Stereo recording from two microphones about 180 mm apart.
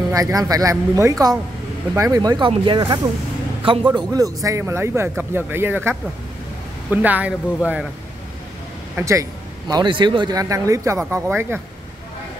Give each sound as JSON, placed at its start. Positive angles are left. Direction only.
{"t": 0.1, "sound": "a man's voice", "side_deg": -20}
{"t": 8.9, "sound": "a man's voice", "side_deg": -15}